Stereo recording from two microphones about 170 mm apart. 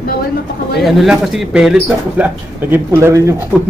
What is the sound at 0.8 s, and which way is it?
Speech, centre (ahead or behind).